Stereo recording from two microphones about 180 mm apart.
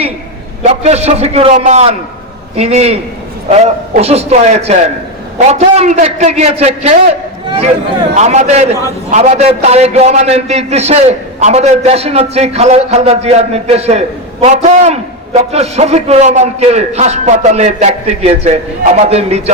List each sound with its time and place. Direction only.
0.6 s a man's voice: 40° right (ahead or behind)